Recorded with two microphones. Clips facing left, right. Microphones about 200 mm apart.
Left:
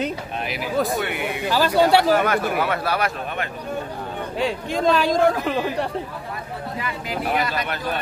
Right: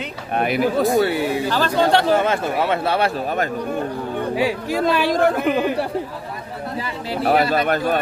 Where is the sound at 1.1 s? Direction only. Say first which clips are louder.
Right 6 dB; 35° right (ahead or behind).